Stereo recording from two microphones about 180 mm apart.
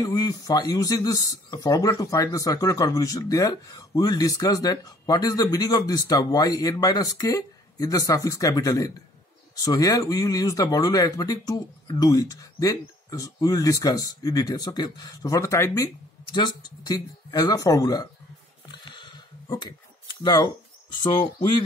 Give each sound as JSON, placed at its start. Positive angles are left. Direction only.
{"t": 0.0, "sound": "speech", "side_deg": 20}
{"t": 18.9, "sound": "a sound", "side_deg": 25}
{"t": 20.9, "sound": "speech", "side_deg": 25}